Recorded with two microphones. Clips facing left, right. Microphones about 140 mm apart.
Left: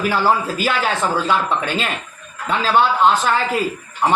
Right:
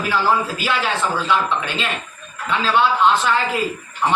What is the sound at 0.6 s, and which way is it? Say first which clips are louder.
Speech: left 2 dB; 40° left (ahead or behind).